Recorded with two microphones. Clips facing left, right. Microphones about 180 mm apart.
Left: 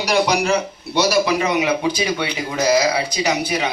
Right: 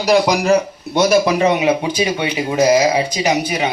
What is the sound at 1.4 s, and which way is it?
Speech, 25° right (ahead or behind).